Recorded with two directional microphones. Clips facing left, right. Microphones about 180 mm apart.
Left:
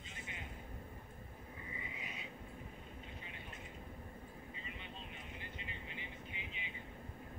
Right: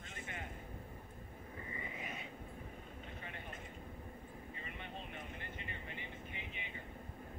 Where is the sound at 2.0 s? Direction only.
50° right (ahead or behind).